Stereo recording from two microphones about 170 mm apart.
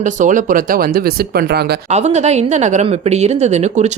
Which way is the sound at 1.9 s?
40° right (ahead or behind).